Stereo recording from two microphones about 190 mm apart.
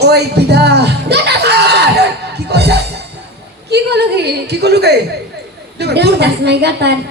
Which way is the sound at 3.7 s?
60° right (ahead or behind).